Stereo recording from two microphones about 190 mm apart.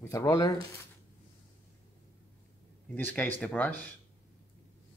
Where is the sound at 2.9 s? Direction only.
10° left (ahead or behind).